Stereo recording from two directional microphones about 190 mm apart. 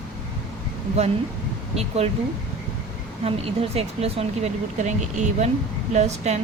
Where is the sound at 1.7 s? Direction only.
35° right (ahead or behind).